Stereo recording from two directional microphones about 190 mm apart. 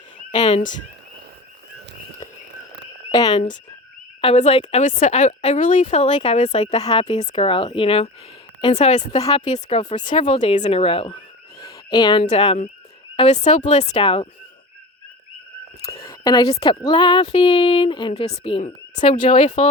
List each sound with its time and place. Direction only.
0.3 s a woman's voice: 30° left (ahead or behind)
3.1 s speech: 20° left (ahead or behind)
4.2 s a woman's voice: 35° left (ahead or behind)
11.6 s a sound: 20° left (ahead or behind)
12.2 s a woman's voice: 35° left (ahead or behind)
15.8 s a woman's voice: 30° left (ahead or behind)
16.0 s a woman's voice: 20° left (ahead or behind)